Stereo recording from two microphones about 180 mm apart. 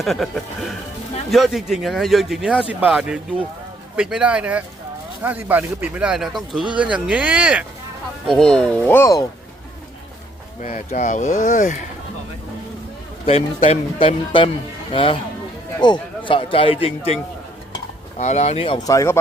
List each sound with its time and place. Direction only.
0.0 s speech: centre (ahead or behind)
10.6 s speech: 45° left (ahead or behind)
13.2 s a man's voice: 30° left (ahead or behind)
18.2 s a man's voice: 40° left (ahead or behind); by 19.2 s 15° left (ahead or behind)